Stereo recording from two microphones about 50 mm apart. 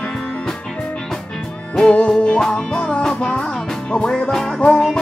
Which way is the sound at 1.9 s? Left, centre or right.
Left.